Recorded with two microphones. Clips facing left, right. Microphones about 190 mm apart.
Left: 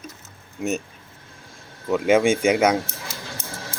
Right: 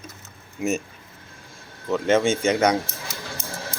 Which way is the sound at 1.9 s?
10° left (ahead or behind).